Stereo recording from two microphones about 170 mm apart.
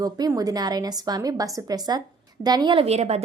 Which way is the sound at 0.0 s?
20° right (ahead or behind).